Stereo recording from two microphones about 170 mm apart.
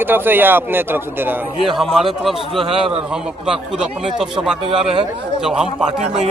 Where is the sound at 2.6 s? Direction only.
35° right (ahead or behind).